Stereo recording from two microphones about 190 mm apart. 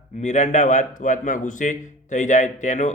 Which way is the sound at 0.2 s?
40° left (ahead or behind).